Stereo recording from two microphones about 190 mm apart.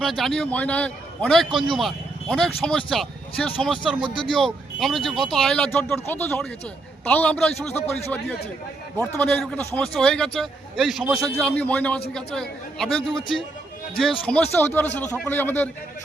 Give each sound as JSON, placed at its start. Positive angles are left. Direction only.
{"t": 0.0, "sound": "a man's voice", "side_deg": 0}
{"t": 7.8, "sound": "a man's voice", "side_deg": 35}
{"t": 9.0, "sound": "a man's voice", "side_deg": 5}
{"t": 14.0, "sound": "a man's voice", "side_deg": 5}